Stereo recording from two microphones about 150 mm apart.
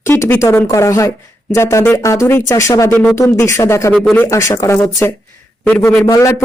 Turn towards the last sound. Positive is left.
turn(degrees=20)  # may be behind; listen again after turning